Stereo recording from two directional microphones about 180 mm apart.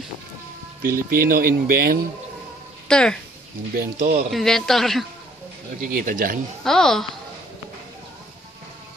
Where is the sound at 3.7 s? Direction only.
55° right (ahead or behind).